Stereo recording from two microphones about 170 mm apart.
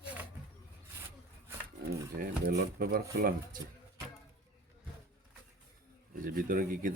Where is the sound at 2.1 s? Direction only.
55° right (ahead or behind).